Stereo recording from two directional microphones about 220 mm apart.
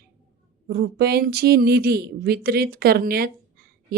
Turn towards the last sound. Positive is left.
turn(degrees=-45)  # may be behind; listen again after turning